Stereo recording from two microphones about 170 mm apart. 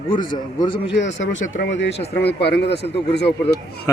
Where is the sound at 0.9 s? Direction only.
90° left.